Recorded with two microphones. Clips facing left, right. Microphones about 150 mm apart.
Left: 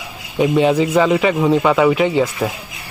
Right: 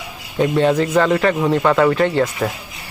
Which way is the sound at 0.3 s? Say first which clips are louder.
Left 1 dB; 10° left (ahead or behind).